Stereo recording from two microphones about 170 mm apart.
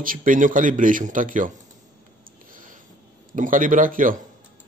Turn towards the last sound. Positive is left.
turn(degrees=-55)  # may be behind; listen again after turning